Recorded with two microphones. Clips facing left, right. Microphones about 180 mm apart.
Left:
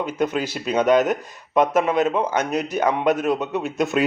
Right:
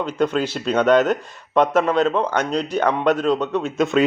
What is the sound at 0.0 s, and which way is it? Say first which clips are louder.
Speech: right 2 dB; 15° left (ahead or behind).